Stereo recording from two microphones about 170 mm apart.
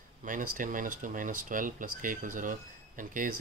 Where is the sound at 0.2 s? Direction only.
50° right (ahead or behind).